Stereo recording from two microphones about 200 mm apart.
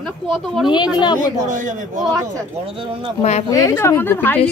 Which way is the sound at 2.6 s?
25° right (ahead or behind).